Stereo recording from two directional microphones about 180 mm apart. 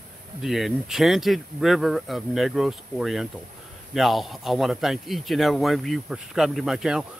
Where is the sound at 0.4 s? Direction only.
Centre (ahead or behind).